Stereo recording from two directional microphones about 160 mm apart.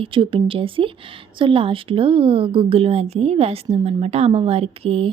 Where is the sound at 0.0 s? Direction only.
35° right (ahead or behind).